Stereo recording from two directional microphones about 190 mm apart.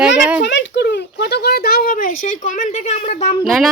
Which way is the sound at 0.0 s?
5° right (ahead or behind).